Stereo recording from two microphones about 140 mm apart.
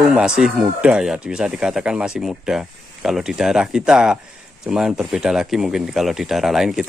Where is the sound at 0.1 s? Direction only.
5° right (ahead or behind).